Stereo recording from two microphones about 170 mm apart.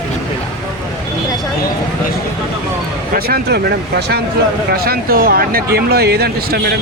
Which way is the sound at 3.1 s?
70° right (ahead or behind).